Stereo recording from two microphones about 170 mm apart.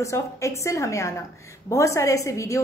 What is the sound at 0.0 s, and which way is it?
A woman's voice, 15° left (ahead or behind).